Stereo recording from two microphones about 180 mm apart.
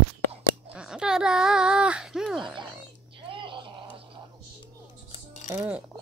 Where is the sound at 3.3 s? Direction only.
25° right (ahead or behind).